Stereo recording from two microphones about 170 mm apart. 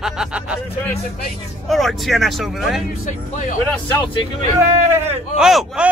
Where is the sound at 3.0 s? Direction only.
45° left (ahead or behind).